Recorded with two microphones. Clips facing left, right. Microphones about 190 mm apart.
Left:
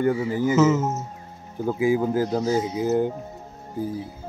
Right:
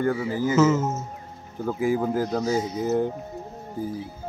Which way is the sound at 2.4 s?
5° left (ahead or behind).